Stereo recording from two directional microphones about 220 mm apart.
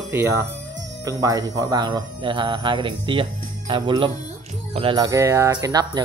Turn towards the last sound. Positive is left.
turn(degrees=-20)  # may be behind; listen again after turning